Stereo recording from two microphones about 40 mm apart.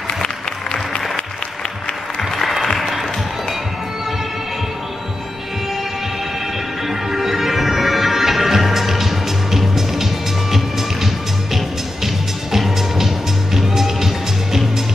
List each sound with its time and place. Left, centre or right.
2.8 s music: centre
6.9 s music: centre
12.5 s music: centre